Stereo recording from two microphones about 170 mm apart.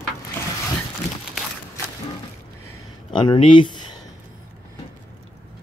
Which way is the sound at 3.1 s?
30° left (ahead or behind).